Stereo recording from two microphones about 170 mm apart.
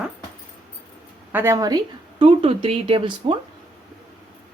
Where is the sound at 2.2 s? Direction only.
30° right (ahead or behind).